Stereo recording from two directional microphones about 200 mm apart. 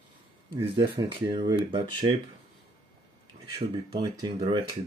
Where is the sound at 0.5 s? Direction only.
25° right (ahead or behind).